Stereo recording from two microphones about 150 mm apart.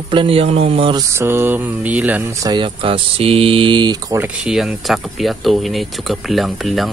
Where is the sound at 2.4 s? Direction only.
30° right (ahead or behind).